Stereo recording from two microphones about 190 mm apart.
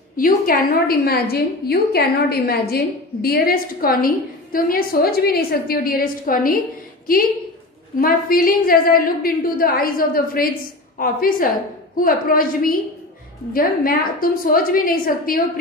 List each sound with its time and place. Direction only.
0.1 s a woman's voice: 50° left (ahead or behind)
8.0 s a woman's voice: 50° left (ahead or behind)